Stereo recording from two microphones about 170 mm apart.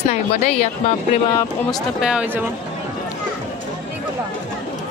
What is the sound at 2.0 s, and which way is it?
Speech, 5° right (ahead or behind).